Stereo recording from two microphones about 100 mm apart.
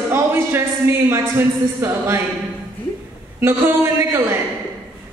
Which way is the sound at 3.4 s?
25° right (ahead or behind).